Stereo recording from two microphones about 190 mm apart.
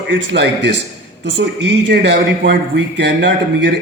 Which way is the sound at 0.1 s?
65° right (ahead or behind).